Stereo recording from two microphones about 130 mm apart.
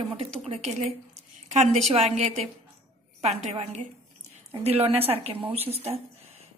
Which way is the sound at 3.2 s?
55° right (ahead or behind).